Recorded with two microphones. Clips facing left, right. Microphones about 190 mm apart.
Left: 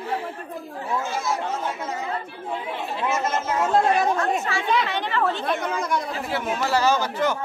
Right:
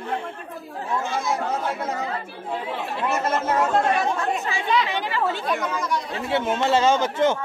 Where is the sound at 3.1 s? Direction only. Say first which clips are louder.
Right 3 dB; 60° right (ahead or behind).